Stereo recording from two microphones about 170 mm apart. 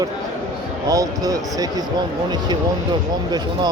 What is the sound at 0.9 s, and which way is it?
Speech, 20° right (ahead or behind).